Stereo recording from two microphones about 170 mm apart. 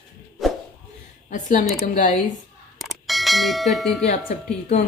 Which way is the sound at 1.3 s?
45° left (ahead or behind).